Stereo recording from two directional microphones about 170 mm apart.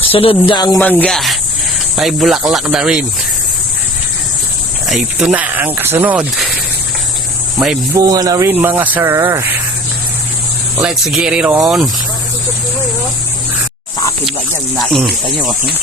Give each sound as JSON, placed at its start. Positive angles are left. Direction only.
{"t": 0.1, "sound": "speech", "side_deg": 35}
{"t": 0.8, "sound": "speech", "side_deg": 10}
{"t": 4.9, "sound": "speech", "side_deg": -5}
{"t": 7.9, "sound": "speech", "side_deg": -20}
{"t": 10.8, "sound": "speech", "side_deg": -5}
{"t": 14.8, "sound": "speech", "side_deg": 0}